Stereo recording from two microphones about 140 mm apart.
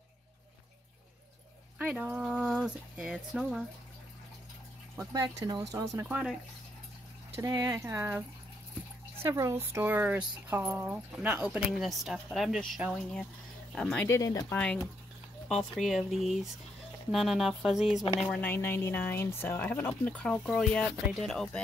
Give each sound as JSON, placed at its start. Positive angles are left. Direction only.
{"t": 1.8, "sound": "speech", "side_deg": -10}
{"t": 4.9, "sound": "speech", "side_deg": -25}
{"t": 6.0, "sound": "speech", "side_deg": -10}
{"t": 7.3, "sound": "speech", "side_deg": -25}
{"t": 14.0, "sound": "speech", "side_deg": 20}
{"t": 14.5, "sound": "speech", "side_deg": 10}
{"t": 18.2, "sound": "speech", "side_deg": 10}